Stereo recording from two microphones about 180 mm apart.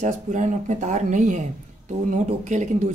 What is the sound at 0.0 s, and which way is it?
Speech, 45° right (ahead or behind).